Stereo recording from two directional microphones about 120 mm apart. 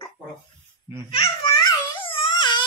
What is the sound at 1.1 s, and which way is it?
Speech, 50° left (ahead or behind).